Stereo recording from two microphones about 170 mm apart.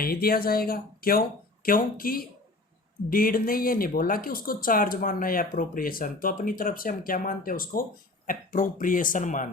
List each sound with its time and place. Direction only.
0.0 s speech: 60° left (ahead or behind)